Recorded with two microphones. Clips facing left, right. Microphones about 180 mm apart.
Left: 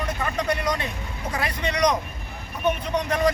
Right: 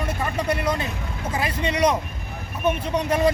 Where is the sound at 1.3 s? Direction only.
25° right (ahead or behind).